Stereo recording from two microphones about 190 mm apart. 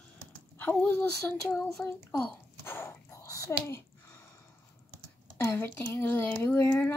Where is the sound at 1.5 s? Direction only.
5° left (ahead or behind).